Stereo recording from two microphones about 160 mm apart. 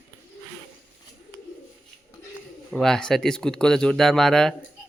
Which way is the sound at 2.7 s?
Centre (ahead or behind).